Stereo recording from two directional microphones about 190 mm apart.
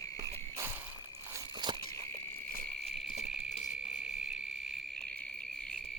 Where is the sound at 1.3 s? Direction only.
25° right (ahead or behind).